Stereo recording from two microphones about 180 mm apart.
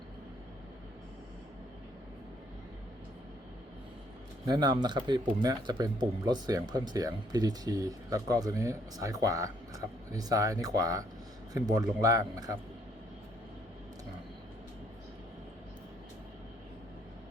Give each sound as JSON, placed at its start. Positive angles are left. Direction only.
{"t": 4.4, "sound": "speech", "side_deg": -25}